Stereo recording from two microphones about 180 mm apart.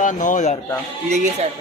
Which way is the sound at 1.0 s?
40° right (ahead or behind).